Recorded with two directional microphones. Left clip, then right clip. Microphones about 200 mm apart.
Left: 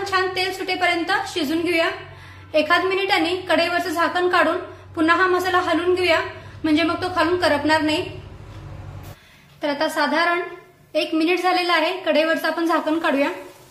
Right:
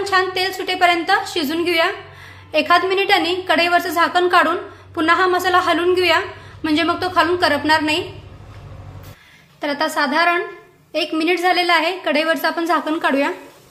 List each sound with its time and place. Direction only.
0.0 s a woman's voice: 45° right (ahead or behind)
9.6 s a woman's voice: 35° right (ahead or behind)